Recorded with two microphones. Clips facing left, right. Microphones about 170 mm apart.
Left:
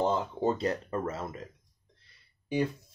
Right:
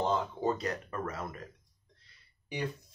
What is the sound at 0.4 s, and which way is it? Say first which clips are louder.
Speech: left 3 dB; 25° left (ahead or behind).